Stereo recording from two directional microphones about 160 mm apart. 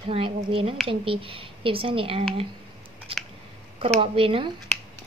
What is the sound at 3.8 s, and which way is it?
Speech, 35° right (ahead or behind).